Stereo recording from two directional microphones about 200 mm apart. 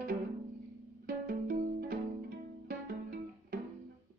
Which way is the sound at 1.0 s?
45° right (ahead or behind).